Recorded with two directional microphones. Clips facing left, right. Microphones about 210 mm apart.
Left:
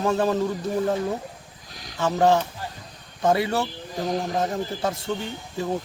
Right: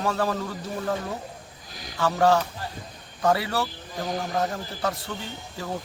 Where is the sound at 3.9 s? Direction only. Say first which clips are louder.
Left 3 dB; centre (ahead or behind).